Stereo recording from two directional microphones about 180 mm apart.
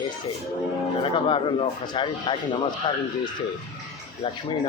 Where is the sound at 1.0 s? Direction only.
25° left (ahead or behind).